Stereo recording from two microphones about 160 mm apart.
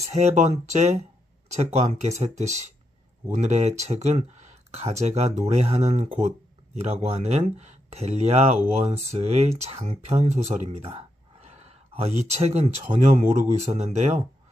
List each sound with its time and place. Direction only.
0.1 s speech: 45° right (ahead or behind)
3.3 s speech: 45° right (ahead or behind)